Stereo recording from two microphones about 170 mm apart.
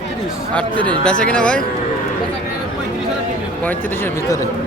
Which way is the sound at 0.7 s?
30° right (ahead or behind).